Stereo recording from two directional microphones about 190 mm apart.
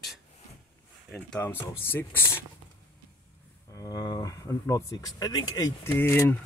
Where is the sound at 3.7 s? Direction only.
20° left (ahead or behind).